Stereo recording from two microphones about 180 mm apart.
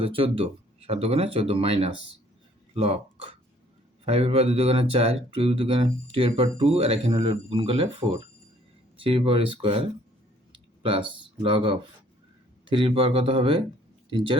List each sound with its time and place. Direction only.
0.0 s speech: 30° right (ahead or behind)